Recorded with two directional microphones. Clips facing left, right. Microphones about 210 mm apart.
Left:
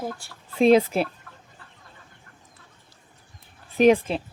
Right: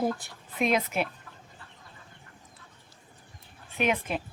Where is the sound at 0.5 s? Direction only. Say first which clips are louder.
Left 9 dB; 30° left (ahead or behind).